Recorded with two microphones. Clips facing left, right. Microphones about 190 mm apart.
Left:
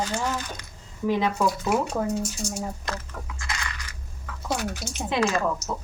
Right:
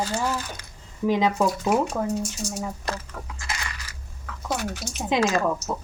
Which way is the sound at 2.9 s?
25° right (ahead or behind).